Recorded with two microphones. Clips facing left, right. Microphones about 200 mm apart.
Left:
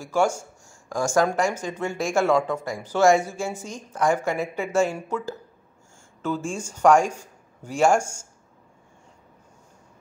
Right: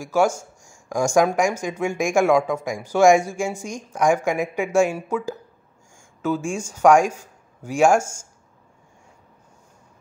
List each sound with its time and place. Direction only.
0.0 s speech: 10° right (ahead or behind)